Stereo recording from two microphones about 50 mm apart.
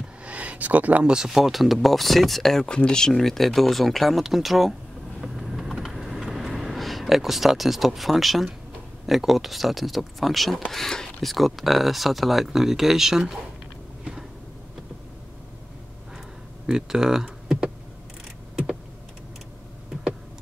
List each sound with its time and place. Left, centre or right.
0.2 s a sound: right
1.0 s speech: centre
2.6 s speech: centre
3.1 s speech: centre
5.3 s a sound: centre
9.0 s speech: centre
16.6 s speech: centre